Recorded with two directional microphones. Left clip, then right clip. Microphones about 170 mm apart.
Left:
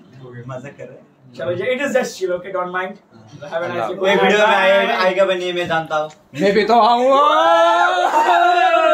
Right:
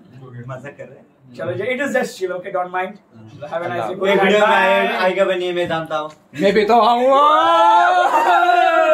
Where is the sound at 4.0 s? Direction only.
20° left (ahead or behind).